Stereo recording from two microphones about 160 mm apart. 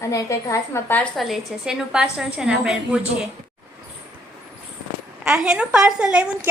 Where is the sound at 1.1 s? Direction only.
Centre (ahead or behind).